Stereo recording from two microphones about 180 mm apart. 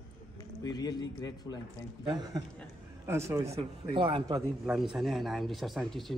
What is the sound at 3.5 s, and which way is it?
Speech, 30° right (ahead or behind).